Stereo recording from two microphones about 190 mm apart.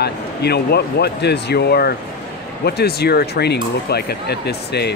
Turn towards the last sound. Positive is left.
turn(degrees=60)  # may be behind; listen again after turning